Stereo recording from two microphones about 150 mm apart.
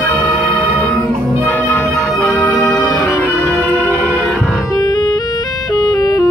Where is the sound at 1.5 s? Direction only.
10° left (ahead or behind).